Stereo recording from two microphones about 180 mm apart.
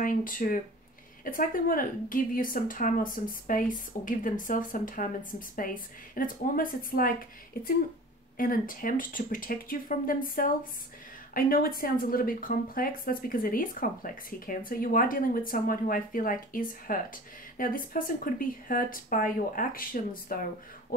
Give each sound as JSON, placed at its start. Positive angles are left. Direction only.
{"t": 0.0, "sound": "speech", "side_deg": 50}